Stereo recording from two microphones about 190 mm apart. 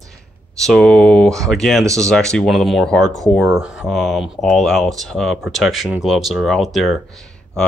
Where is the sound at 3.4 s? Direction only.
10° right (ahead or behind).